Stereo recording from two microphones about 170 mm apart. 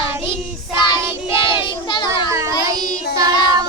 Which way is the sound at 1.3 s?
30° left (ahead or behind).